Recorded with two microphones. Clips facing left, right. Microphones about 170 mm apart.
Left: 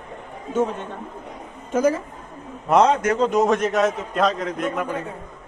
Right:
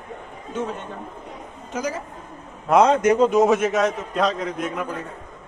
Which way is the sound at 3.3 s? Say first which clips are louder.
Right 2 dB; 5° right (ahead or behind).